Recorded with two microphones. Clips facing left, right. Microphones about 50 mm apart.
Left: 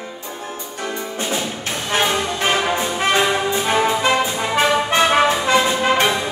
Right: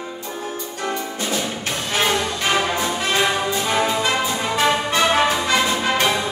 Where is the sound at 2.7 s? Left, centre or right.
Left.